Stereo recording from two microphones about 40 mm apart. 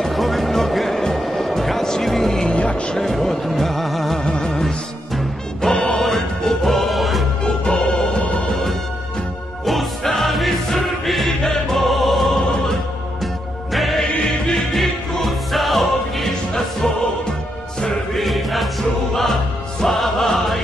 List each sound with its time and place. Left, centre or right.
0.0 s music: centre
2.4 s vehicle: left
3.0 s music: centre
4.2 s music: centre
7.4 s music: left
8.2 s music: left
9.7 s music: centre
18.1 s music: centre